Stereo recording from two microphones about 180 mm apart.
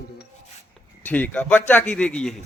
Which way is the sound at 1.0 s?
10° left (ahead or behind).